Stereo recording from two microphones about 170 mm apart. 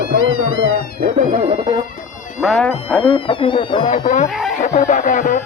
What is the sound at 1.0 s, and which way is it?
Speech, 40° right (ahead or behind).